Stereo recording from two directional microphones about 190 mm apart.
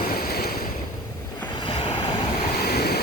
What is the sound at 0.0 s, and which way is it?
Waves, 50° left (ahead or behind).